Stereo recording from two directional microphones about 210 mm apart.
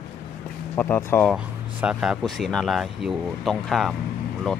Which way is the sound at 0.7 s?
10° left (ahead or behind).